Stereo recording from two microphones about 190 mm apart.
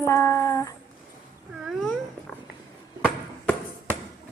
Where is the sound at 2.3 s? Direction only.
5° left (ahead or behind).